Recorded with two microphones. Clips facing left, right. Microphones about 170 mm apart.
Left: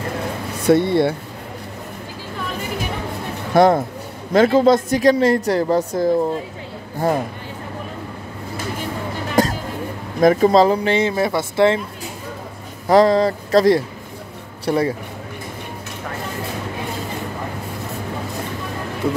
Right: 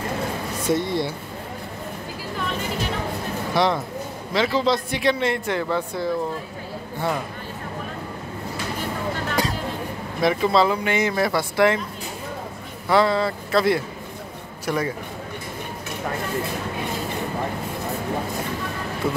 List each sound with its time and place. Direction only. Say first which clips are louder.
0.7 s speech: left 8 dB; 60° left (ahead or behind)
3.5 s speech: left 8 dB; 50° left (ahead or behind)
9.4 s a sound: left 8 dB; 45° left (ahead or behind)
10.2 s speech: left 6 dB; 45° left (ahead or behind); by 11.8 s 25° left (ahead or behind)
12.8 s a man's voice: left 6 dB; 40° left (ahead or behind)
19.0 s speech: left 4 dB; 5° right (ahead or behind)